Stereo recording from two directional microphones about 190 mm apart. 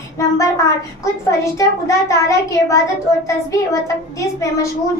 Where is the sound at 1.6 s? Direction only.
15° left (ahead or behind).